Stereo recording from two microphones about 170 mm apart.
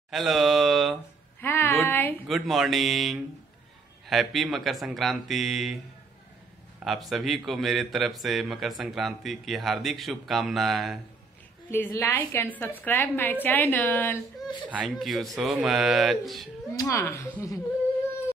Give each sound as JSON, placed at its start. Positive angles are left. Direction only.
{"t": 0.1, "sound": "mantra", "side_deg": 0}
{"t": 1.4, "sound": "a sound", "side_deg": 15}
{"t": 2.2, "sound": "speech", "side_deg": 0}
{"t": 6.8, "sound": "speech", "side_deg": 0}
{"t": 11.7, "sound": "a woman's voice", "side_deg": 15}
{"t": 15.0, "sound": "speech", "side_deg": 0}
{"t": 16.7, "sound": "a woman's voice", "side_deg": 20}